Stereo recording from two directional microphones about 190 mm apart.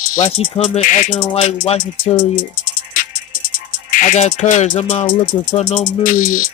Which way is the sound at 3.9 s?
40° left (ahead or behind).